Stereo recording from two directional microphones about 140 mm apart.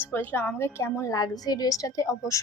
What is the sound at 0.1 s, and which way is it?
A woman's voice, 15° left (ahead or behind).